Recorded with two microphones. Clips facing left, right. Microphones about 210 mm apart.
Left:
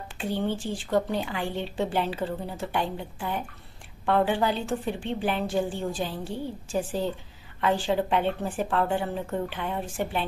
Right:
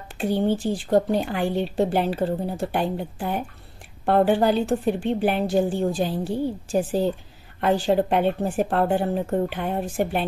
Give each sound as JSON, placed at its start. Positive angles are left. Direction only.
{"t": 0.3, "sound": "a woman's voice", "side_deg": -40}